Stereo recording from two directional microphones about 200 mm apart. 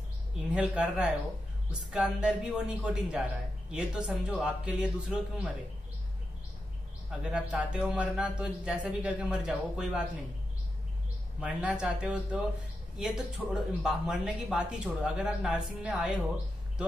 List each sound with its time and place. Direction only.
0.5 s speech: 5° right (ahead or behind)
7.1 s speech: 5° right (ahead or behind)
11.4 s speech: 5° right (ahead or behind)